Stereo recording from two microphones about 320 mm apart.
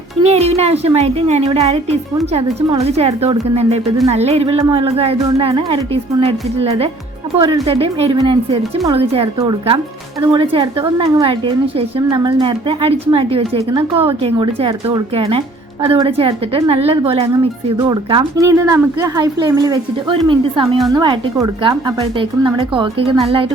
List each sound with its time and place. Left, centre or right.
0.2 s a woman's voice: centre